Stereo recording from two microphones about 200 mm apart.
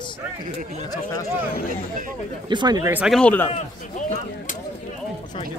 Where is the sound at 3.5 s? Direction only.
35° left (ahead or behind).